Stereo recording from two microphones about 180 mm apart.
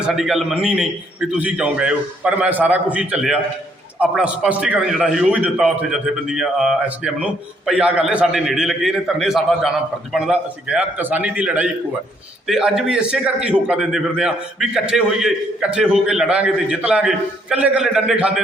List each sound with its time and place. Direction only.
0.0 s a man's voice: centre (ahead or behind)